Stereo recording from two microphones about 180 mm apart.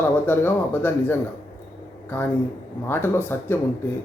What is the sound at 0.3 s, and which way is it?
Speech, 10° left (ahead or behind).